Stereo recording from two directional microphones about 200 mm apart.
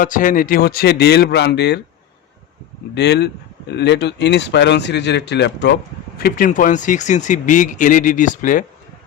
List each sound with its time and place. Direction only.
0.0 s a man's voice: 40° left (ahead or behind)
2.9 s speech: 55° left (ahead or behind)
6.1 s speech: 45° left (ahead or behind)